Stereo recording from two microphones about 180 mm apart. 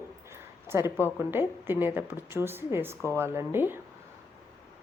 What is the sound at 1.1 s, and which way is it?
A woman's voice, 10° right (ahead or behind).